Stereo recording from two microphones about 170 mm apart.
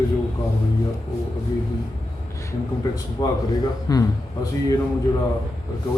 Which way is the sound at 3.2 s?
20° left (ahead or behind).